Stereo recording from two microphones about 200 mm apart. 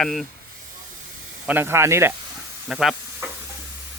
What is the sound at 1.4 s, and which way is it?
Speech, 10° right (ahead or behind).